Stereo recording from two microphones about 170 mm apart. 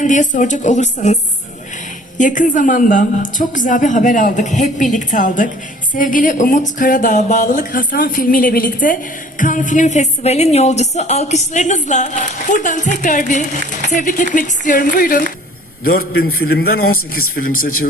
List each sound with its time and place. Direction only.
0.0 s a woman's voice: 45° left (ahead or behind)